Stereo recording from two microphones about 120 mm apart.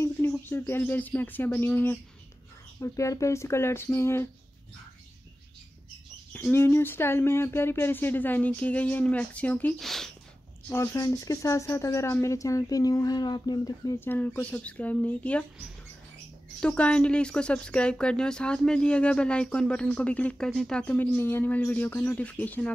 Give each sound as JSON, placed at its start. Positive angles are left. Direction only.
{"t": 0.5, "sound": "speech", "side_deg": 20}
{"t": 2.8, "sound": "speech", "side_deg": 25}
{"t": 6.5, "sound": "speech", "side_deg": 20}
{"t": 9.8, "sound": "speech", "side_deg": 0}
{"t": 10.7, "sound": "speech", "side_deg": 20}
{"t": 13.9, "sound": "speech", "side_deg": 15}
{"t": 16.5, "sound": "speech", "side_deg": 10}